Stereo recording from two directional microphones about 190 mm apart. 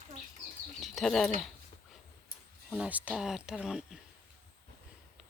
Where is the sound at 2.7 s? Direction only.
10° right (ahead or behind).